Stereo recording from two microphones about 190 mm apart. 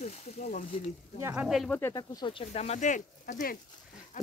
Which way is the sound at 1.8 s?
20° left (ahead or behind).